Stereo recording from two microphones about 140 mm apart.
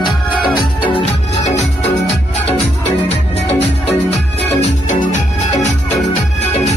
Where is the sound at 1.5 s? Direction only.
50° left (ahead or behind).